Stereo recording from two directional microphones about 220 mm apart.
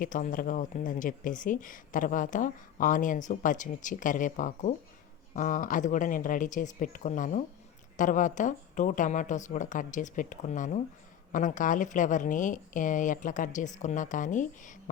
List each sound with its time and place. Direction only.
0.0 s speech: 35° left (ahead or behind)